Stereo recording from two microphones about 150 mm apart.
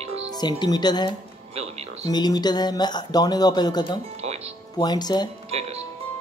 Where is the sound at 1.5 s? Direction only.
45° right (ahead or behind).